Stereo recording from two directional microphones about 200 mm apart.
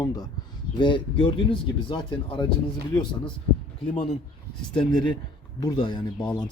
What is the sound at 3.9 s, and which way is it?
Speech, 30° left (ahead or behind).